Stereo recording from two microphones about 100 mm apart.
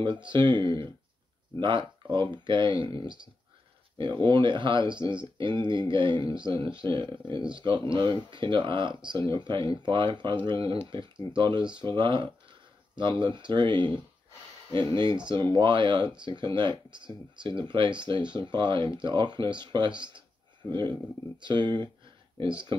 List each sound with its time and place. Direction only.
0.0 s speech: 50° right (ahead or behind)
4.0 s speech: 50° right (ahead or behind)
15.0 s speech: 50° right (ahead or behind)
21.4 s speech: 50° right (ahead or behind)
22.7 s speech: 60° right (ahead or behind)